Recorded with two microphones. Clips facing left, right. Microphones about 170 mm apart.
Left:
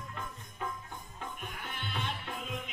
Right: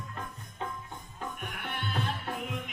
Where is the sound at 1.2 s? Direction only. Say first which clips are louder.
Right 4 dB; 70° right (ahead or behind).